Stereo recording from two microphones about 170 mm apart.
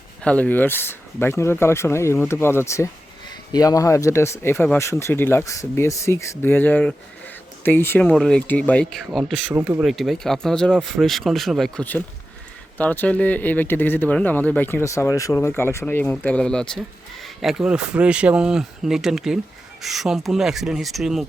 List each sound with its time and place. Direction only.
0.2 s speech: 5° left (ahead or behind)
9.6 s speech: 10° right (ahead or behind)
9.9 s speech: centre (ahead or behind)